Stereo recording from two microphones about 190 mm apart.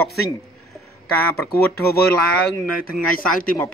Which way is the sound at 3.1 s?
45° left (ahead or behind).